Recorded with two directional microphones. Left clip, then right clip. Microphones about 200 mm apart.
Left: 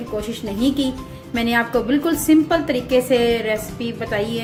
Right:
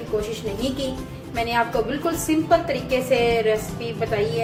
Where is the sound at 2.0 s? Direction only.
40° left (ahead or behind).